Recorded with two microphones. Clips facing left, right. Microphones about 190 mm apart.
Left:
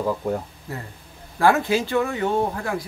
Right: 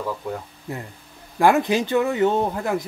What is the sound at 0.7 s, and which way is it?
Speech, 15° right (ahead or behind).